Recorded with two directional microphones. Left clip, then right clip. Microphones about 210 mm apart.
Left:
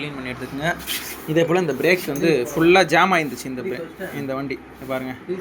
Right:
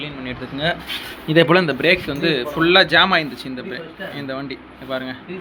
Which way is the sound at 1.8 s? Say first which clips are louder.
Right 2 dB; 5° right (ahead or behind).